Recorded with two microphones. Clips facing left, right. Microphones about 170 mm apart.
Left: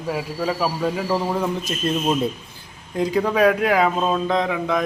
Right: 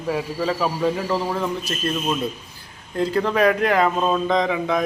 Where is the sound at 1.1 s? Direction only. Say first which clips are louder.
Left 1 dB; 15° left (ahead or behind).